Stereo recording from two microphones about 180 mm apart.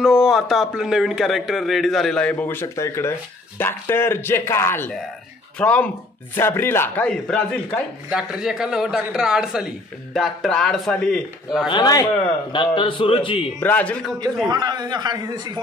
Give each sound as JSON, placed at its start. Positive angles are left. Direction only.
{"t": 0.0, "sound": "a man's voice", "side_deg": -5}
{"t": 11.7, "sound": "a man's voice", "side_deg": 20}
{"t": 13.6, "sound": "speech", "side_deg": 10}
{"t": 14.5, "sound": "a man's voice", "side_deg": -25}